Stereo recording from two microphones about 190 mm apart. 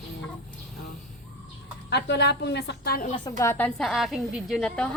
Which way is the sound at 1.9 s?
65° left (ahead or behind).